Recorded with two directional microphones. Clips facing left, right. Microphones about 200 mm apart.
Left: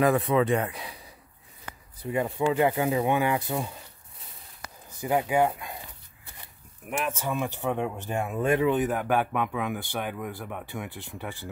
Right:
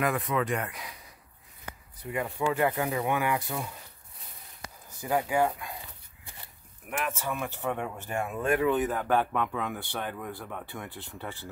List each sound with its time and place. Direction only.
0.0 s speech: 30° left (ahead or behind)
2.0 s speech: 25° left (ahead or behind)
5.0 s speech: 20° left (ahead or behind)
6.9 s speech: 15° left (ahead or behind)